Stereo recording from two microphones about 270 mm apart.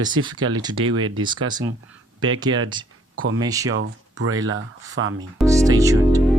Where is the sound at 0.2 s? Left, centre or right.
Right.